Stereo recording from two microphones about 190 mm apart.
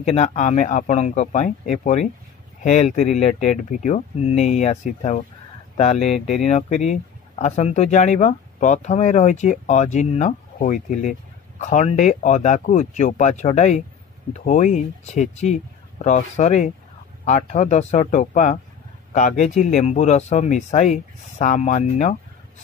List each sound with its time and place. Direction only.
0.0 s speech: 35° left (ahead or behind)